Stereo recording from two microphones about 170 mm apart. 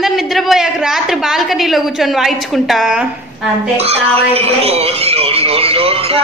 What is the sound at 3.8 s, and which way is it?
A woman's voice, 35° right (ahead or behind).